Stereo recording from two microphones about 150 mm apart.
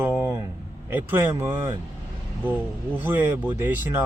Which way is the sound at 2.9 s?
15° right (ahead or behind).